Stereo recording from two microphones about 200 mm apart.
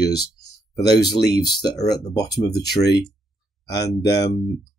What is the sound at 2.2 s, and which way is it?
Speech, 55° left (ahead or behind).